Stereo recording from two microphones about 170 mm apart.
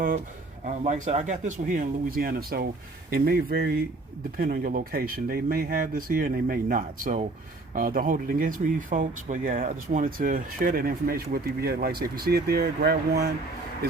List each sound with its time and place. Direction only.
0.6 s speech: 45° right (ahead or behind); by 13.3 s 65° right (ahead or behind)